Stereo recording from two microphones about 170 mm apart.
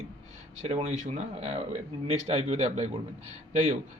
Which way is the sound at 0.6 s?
40° right (ahead or behind).